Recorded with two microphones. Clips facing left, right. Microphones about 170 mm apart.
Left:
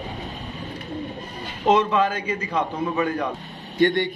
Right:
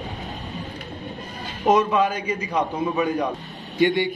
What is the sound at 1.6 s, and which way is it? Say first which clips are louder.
A man's voice: even; 10° right (ahead or behind).